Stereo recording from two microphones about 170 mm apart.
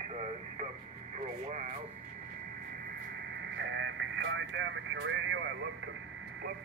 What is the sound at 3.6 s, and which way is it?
Speech, 90° right.